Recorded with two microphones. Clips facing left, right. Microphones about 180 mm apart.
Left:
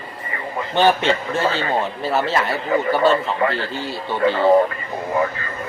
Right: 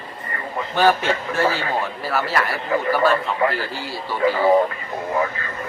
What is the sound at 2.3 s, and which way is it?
Speech, 25° left (ahead or behind).